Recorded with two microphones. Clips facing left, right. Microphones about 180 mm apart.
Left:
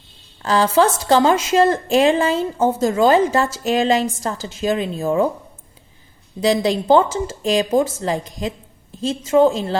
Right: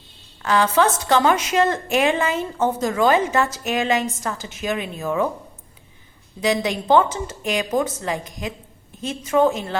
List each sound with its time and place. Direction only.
0.4 s a woman's voice: 30° left (ahead or behind)
6.4 s a woman's voice: 30° left (ahead or behind)